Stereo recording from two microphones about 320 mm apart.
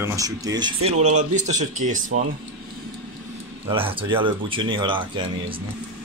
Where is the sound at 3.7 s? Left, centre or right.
Centre.